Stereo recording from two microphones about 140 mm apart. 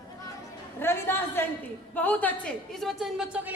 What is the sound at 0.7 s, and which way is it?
A woman's voice, 15° left (ahead or behind).